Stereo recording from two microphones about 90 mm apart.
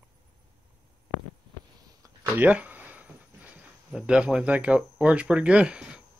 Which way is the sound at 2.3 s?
20° right (ahead or behind).